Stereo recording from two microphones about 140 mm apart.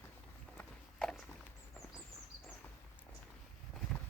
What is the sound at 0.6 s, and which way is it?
Walk, 5° left (ahead or behind).